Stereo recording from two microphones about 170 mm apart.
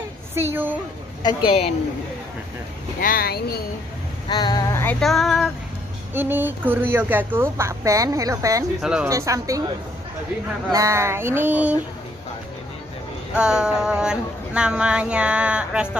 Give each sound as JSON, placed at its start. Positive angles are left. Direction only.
{"t": 0.3, "sound": "a woman's voice", "side_deg": -15}
{"t": 1.2, "sound": "speech", "side_deg": 25}
{"t": 3.0, "sound": "speech", "side_deg": 60}
{"t": 4.3, "sound": "speech", "side_deg": 25}
{"t": 5.0, "sound": "female singing", "side_deg": 0}
{"t": 6.1, "sound": "a woman's voice", "side_deg": -10}
{"t": 8.8, "sound": "female singing", "side_deg": -5}
{"t": 9.1, "sound": "speech", "side_deg": -20}
{"t": 10.7, "sound": "a woman's voice", "side_deg": -20}
{"t": 13.3, "sound": "a woman's voice", "side_deg": -5}